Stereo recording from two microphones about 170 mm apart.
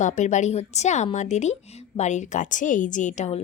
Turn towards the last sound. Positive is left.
turn(degrees=45)  # may be behind; listen again after turning